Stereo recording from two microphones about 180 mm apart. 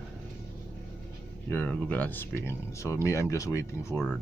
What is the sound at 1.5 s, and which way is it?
Speech, 10° left (ahead or behind).